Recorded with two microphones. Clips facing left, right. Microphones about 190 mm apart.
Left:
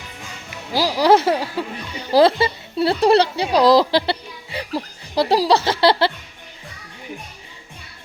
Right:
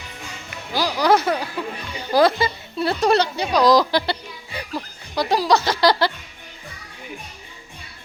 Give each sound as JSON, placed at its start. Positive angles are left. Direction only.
{"t": 0.7, "sound": "speech", "side_deg": 30}